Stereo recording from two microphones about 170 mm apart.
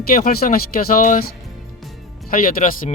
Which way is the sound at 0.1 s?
60° left (ahead or behind).